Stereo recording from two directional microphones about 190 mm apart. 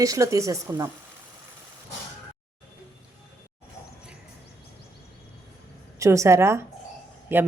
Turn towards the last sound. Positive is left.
turn(degrees=-10)  # may be behind; listen again after turning